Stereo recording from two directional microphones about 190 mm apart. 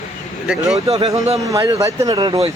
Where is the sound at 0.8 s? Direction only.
30° right (ahead or behind).